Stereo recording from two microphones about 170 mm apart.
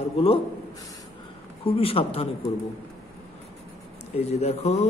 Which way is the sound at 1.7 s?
35° left (ahead or behind).